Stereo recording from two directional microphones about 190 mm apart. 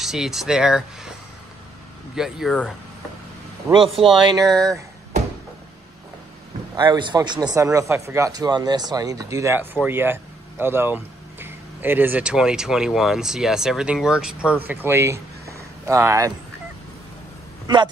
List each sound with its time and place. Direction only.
0.0 s speech: centre (ahead or behind)
2.1 s speech: 5° right (ahead or behind)
3.7 s speech: 15° right (ahead or behind)
6.8 s speech: 25° right (ahead or behind)